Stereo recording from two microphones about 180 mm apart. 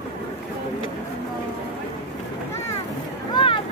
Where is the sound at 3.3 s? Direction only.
25° left (ahead or behind).